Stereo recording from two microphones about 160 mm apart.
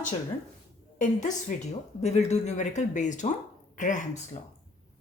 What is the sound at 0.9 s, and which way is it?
Speech, 50° left (ahead or behind).